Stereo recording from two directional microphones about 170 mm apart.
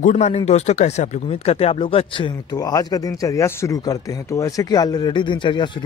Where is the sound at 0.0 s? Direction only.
45° left (ahead or behind).